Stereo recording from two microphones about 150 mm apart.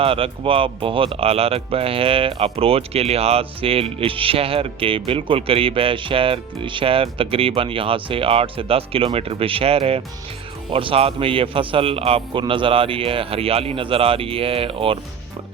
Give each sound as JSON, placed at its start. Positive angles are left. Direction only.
{"t": 0.0, "sound": "speech", "side_deg": -35}